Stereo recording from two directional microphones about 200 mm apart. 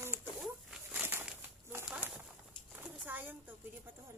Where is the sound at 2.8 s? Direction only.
10° right (ahead or behind).